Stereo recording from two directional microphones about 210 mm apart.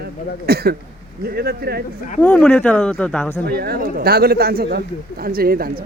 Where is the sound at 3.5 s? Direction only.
45° right (ahead or behind).